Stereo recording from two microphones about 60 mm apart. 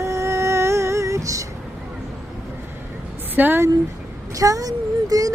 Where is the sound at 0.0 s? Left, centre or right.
Right.